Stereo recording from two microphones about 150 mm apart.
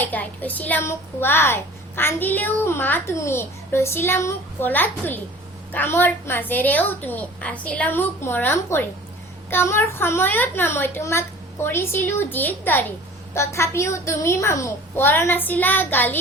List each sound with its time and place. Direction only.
0.0 s a child's voice: 10° left (ahead or behind)